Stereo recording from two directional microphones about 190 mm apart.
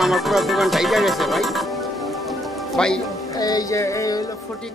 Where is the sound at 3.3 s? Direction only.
20° left (ahead or behind).